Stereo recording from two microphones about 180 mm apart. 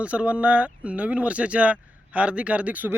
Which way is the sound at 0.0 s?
5° right (ahead or behind).